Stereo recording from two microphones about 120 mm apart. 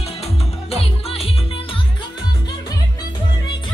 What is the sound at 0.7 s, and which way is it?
Music, 55° left (ahead or behind).